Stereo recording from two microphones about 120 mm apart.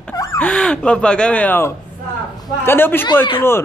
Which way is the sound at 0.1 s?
30° left (ahead or behind).